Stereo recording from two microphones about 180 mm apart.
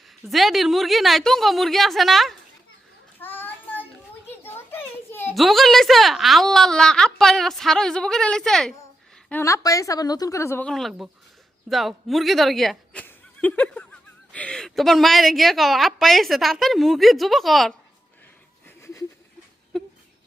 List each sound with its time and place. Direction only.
0.3 s a woman's voice: centre (ahead or behind)
3.2 s child singing: 10° left (ahead or behind)
4.4 s a sound: 10° left (ahead or behind)
5.3 s a woman's voice: centre (ahead or behind)
9.3 s a woman's voice: 15° left (ahead or behind)
10.7 s a woman's voice: centre (ahead or behind)